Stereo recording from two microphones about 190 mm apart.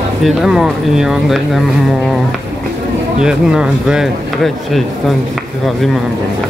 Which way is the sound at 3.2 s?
5° right (ahead or behind).